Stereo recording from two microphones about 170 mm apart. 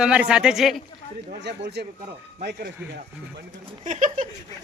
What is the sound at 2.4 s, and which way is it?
Speech, 70° right (ahead or behind).